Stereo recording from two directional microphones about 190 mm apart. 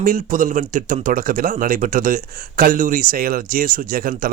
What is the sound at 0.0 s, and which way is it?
Speech, 45° right (ahead or behind).